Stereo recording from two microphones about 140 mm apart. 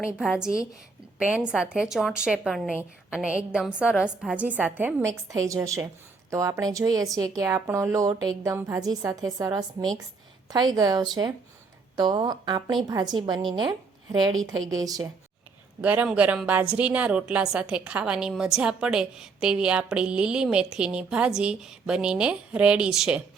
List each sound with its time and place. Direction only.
0.2 s a woman's voice: 5° right (ahead or behind)
5.3 s a woman's voice: 25° right (ahead or behind)
15.8 s a woman's voice: 10° right (ahead or behind)